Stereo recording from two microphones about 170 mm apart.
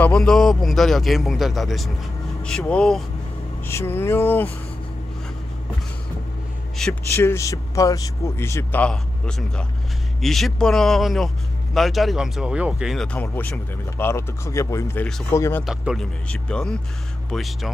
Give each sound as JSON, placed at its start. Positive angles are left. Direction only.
{"t": 0.0, "sound": "a man's voice", "side_deg": 5}
{"t": 6.8, "sound": "a man's voice", "side_deg": 10}
{"t": 15.6, "sound": "speech", "side_deg": -5}